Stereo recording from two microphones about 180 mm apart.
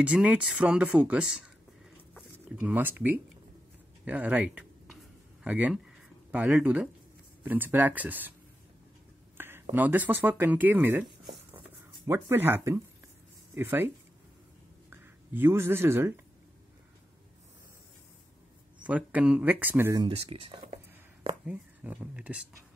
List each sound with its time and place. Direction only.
0.0 s speech: 5° right (ahead or behind)
9.4 s speech: 10° right (ahead or behind)
12.1 s speech: 10° right (ahead or behind)
18.8 s speech: 10° right (ahead or behind)
20.0 s speech: 30° right (ahead or behind)
20.6 s whispering: 35° right (ahead or behind)
21.5 s speech: 10° right (ahead or behind)